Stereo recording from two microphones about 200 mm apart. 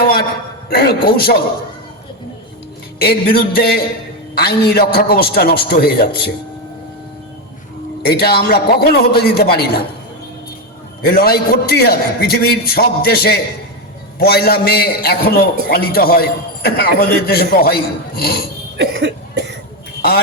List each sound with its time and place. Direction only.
0.7 s a man's voice: 50° left (ahead or behind)
3.0 s a man's voice: 50° left (ahead or behind)
8.0 s a man's voice: 50° left (ahead or behind)
11.0 s a man's voice: 50° left (ahead or behind)
18.8 s cough: 55° right (ahead or behind)
20.0 s a sound: 50° left (ahead or behind)